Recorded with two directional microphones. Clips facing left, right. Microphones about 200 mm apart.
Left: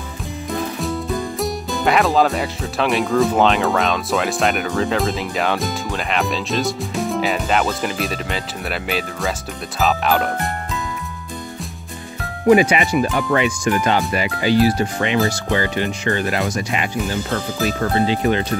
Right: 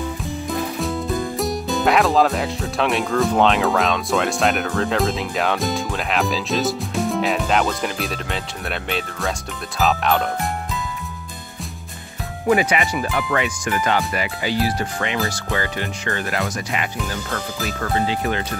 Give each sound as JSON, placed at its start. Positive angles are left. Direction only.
{"t": 0.7, "sound": "speech", "side_deg": 0}
{"t": 12.4, "sound": "speech", "side_deg": 20}